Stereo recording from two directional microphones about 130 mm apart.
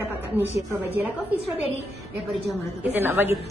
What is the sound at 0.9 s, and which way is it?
Speech, 15° right (ahead or behind).